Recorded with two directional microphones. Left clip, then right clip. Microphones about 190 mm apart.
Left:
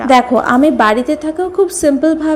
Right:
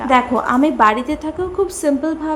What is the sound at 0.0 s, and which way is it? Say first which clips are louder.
A woman's voice: left 5 dB; 20° left (ahead or behind).